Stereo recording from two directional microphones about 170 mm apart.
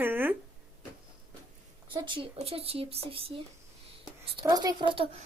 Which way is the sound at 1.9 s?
30° right (ahead or behind).